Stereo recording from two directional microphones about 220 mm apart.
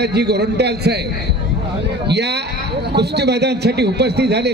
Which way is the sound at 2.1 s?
50° right (ahead or behind).